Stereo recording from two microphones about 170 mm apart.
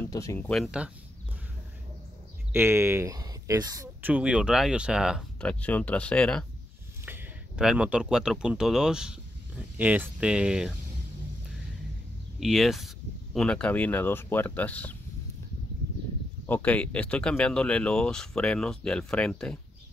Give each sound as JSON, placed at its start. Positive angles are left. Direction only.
{"t": 0.0, "sound": "speech", "side_deg": 20}
{"t": 0.4, "sound": "speech", "side_deg": 5}
{"t": 0.7, "sound": "speech", "side_deg": -5}
{"t": 2.5, "sound": "speech", "side_deg": -15}
{"t": 4.1, "sound": "speech", "side_deg": -5}
{"t": 5.5, "sound": "speech", "side_deg": 10}
{"t": 7.1, "sound": "speech", "side_deg": -10}
{"t": 12.4, "sound": "speech", "side_deg": 0}
{"t": 16.4, "sound": "speech", "side_deg": 10}